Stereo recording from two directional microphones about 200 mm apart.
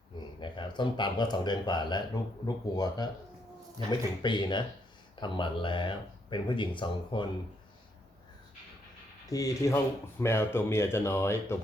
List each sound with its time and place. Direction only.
0.4 s speech: 25° left (ahead or behind)
9.3 s speech: 15° left (ahead or behind)